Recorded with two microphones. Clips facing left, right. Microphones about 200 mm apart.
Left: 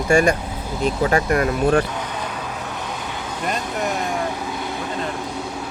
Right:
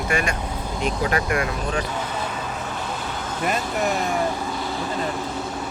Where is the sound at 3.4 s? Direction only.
5° right (ahead or behind).